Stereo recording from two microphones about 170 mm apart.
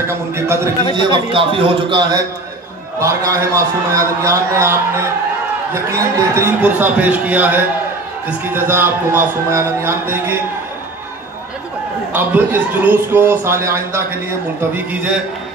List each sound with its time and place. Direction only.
0.1 s speech: 15° right (ahead or behind)
0.9 s a man's voice: 30° right (ahead or behind); by 4.7 s 15° right (ahead or behind)
5.9 s speech: 15° right (ahead or behind)
12.1 s speech: 10° right (ahead or behind)